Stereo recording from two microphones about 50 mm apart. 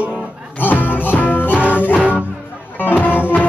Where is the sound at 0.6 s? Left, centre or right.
Left.